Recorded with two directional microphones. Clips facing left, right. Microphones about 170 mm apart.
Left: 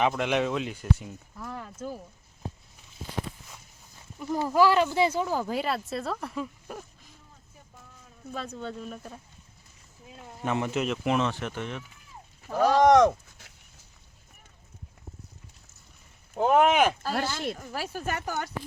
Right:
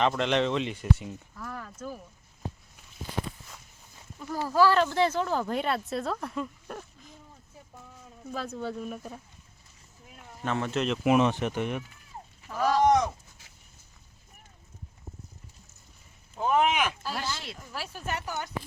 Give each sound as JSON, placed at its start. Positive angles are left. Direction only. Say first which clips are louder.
{"t": 0.0, "sound": "speech", "louder": "even", "side_deg": 10}
{"t": 1.4, "sound": "speech", "louder": "left 3 dB", "side_deg": 20}
{"t": 4.2, "sound": "speech", "louder": "left 1 dB", "side_deg": 15}
{"t": 8.3, "sound": "speech", "louder": "right 2 dB", "side_deg": -5}
{"t": 10.4, "sound": "speech", "louder": "left 1 dB", "side_deg": 15}
{"t": 11.1, "sound": "speech", "louder": "right 7 dB", "side_deg": -15}
{"t": 12.5, "sound": "sheep", "louder": "left 4 dB", "side_deg": 70}
{"t": 16.3, "sound": "speech", "louder": "left 4 dB", "side_deg": 55}